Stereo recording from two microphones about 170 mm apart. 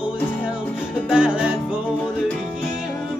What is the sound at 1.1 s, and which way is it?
Music, 5° right (ahead or behind).